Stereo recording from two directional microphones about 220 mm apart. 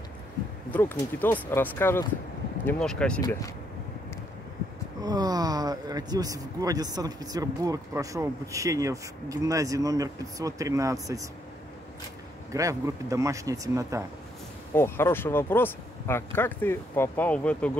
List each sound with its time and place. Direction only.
0.7 s speech: 10° left (ahead or behind)
3.2 s speech: 15° left (ahead or behind)
5.0 s speech: 15° right (ahead or behind)
12.5 s speech: 15° right (ahead or behind)
14.7 s speech: 10° left (ahead or behind)